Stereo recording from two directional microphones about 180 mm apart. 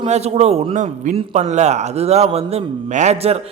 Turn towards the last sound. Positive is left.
turn(degrees=-35)  # may be behind; listen again after turning